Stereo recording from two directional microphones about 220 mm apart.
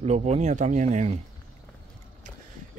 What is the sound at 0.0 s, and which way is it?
Speech, 30° right (ahead or behind).